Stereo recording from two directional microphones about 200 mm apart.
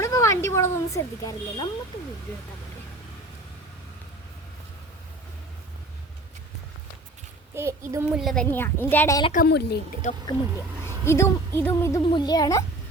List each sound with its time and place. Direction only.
0.0 s a sound: 15° left (ahead or behind)
7.5 s a child's voice: 15° right (ahead or behind)
8.1 s a woman's voice: centre (ahead or behind)
9.3 s a woman's voice: 50° left (ahead or behind)
10.0 s speech: 35° left (ahead or behind)
10.8 s a woman's voice: 15° left (ahead or behind)